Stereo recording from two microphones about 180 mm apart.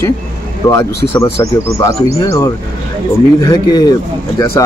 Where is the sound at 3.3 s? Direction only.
20° left (ahead or behind).